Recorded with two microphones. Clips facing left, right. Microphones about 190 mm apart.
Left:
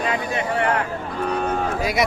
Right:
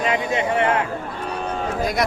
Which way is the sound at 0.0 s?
20° right (ahead or behind).